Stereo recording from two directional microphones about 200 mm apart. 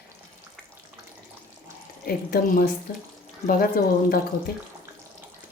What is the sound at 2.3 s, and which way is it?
Speech, 45° left (ahead or behind).